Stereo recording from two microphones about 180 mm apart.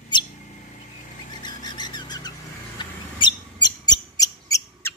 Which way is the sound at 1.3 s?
25° left (ahead or behind).